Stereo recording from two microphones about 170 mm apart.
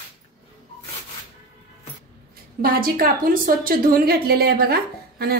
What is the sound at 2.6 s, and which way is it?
A woman's voice, 60° right (ahead or behind).